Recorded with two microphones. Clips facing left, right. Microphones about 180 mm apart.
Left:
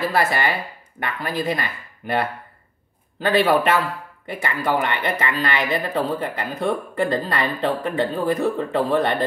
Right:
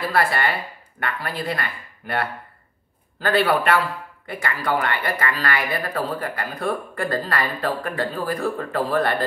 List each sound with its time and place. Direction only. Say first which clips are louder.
0.1 s speech: left 1 dB; 20° left (ahead or behind)